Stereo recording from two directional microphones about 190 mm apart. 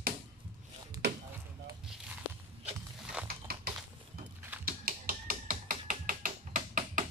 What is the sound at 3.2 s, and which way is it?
Typewriter, 55° right (ahead or behind).